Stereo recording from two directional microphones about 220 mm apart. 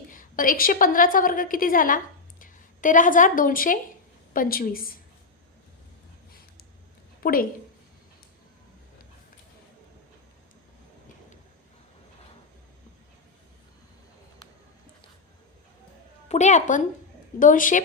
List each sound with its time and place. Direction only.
0.1 s a woman's voice: 40° left (ahead or behind)
7.2 s a woman's voice: 40° left (ahead or behind)
16.3 s a woman's voice: 30° left (ahead or behind)